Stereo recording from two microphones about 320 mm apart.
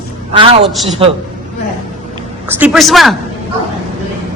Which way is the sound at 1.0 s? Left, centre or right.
Centre.